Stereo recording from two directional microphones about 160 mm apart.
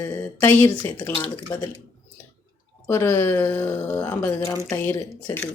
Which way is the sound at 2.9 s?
15° left (ahead or behind).